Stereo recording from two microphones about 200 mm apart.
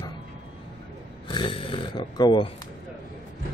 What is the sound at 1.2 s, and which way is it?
A man's voice, 25° left (ahead or behind).